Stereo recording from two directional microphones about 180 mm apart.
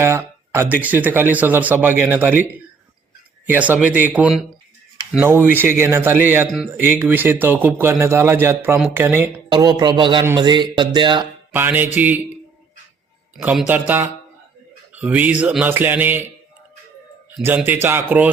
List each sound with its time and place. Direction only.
0.0 s speech: 15° right (ahead or behind)
11.5 s speech: 10° right (ahead or behind)
13.3 s speech: centre (ahead or behind)
17.3 s speech: 10° right (ahead or behind)